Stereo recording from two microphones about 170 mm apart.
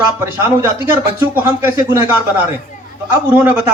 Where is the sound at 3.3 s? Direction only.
10° right (ahead or behind).